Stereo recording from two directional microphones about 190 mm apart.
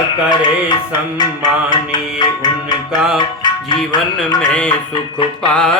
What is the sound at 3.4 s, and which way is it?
Music, 20° left (ahead or behind).